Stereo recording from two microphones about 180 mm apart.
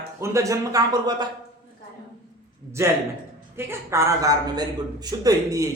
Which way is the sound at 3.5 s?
15° right (ahead or behind).